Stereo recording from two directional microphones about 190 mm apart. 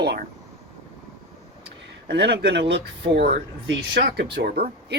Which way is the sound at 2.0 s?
60° right (ahead or behind).